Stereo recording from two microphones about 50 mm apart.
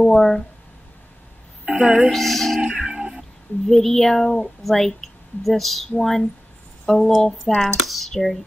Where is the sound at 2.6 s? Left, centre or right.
Right.